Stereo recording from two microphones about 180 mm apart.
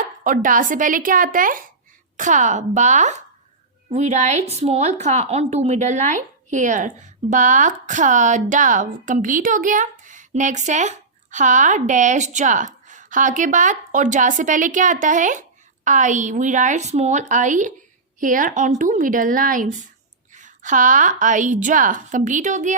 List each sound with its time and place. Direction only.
0.3 s a woman's voice: 50° right (ahead or behind)